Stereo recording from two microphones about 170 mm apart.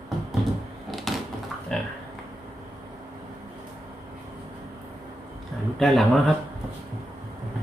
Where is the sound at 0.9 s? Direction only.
Centre (ahead or behind).